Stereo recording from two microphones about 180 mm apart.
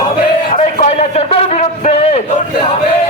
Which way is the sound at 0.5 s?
40° left (ahead or behind).